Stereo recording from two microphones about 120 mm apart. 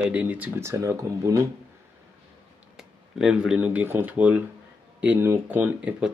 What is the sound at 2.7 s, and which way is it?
Speech, 5° right (ahead or behind).